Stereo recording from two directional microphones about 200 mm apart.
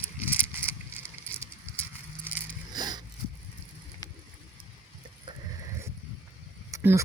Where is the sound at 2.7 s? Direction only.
20° right (ahead or behind).